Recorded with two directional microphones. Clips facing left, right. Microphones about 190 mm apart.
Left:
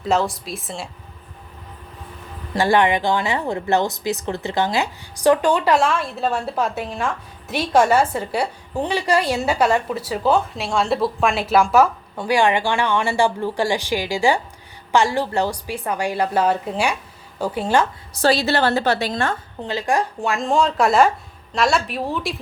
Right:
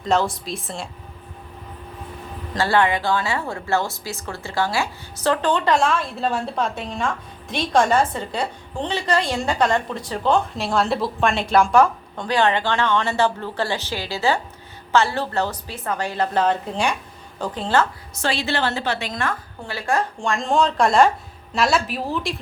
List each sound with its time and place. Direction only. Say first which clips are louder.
0.0 s a woman's voice: even; centre (ahead or behind)
2.6 s a woman's voice: left 2 dB; 15° left (ahead or behind)
18.1 s a woman's voice: left 6 dB; 40° left (ahead or behind); by 22.4 s centre (ahead or behind)